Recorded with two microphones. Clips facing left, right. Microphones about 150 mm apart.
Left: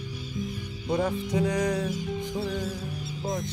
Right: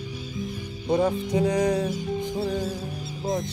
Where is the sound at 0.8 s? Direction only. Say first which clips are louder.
Right 4 dB; 30° right (ahead or behind).